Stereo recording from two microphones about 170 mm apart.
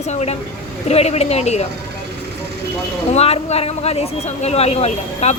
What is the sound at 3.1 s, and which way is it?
Speech, 40° left (ahead or behind).